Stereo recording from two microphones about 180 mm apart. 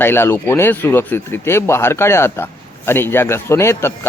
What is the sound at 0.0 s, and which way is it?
Speech, 15° left (ahead or behind).